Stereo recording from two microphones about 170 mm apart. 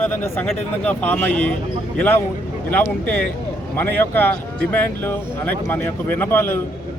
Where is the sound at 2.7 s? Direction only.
10° left (ahead or behind).